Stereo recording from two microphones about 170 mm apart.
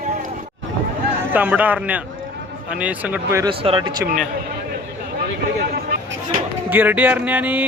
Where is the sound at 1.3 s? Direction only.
10° right (ahead or behind).